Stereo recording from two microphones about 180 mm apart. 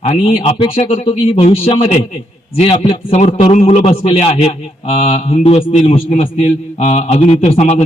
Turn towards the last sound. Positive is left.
turn(degrees=35)  # may be behind; listen again after turning